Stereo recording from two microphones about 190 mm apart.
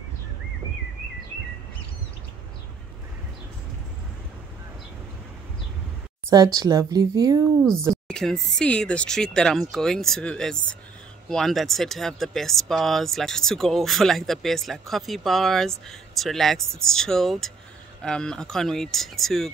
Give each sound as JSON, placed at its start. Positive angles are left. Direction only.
{"t": 6.3, "sound": "speech", "side_deg": -20}
{"t": 7.9, "sound": "speech", "side_deg": 5}